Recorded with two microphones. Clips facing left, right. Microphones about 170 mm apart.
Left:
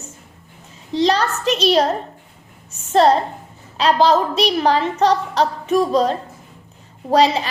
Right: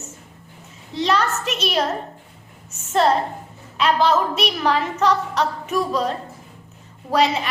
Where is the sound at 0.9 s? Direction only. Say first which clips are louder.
Left 3 dB; 30° left (ahead or behind).